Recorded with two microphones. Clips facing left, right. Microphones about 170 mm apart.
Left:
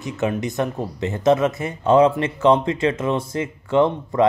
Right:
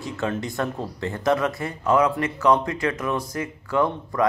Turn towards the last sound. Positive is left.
turn(degrees=25)  # may be behind; listen again after turning